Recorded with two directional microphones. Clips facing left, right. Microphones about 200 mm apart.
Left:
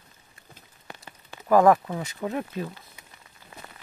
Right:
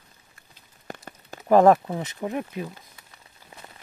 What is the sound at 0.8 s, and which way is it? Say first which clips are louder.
Rain on surface: right 6 dB; 50° right (ahead or behind).